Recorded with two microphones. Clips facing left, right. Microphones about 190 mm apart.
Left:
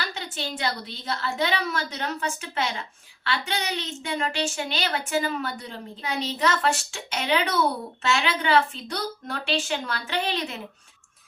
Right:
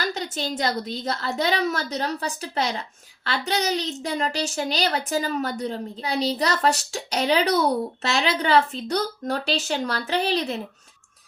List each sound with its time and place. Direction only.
0.0 s a woman's voice: 40° right (ahead or behind)